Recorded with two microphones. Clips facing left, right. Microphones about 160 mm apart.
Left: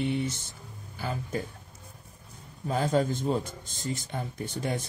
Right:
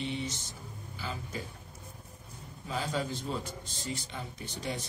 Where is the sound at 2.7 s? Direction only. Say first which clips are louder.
Left 8 dB; 50° left (ahead or behind).